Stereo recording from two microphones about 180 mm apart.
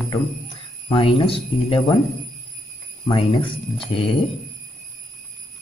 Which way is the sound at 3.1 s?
30° left (ahead or behind).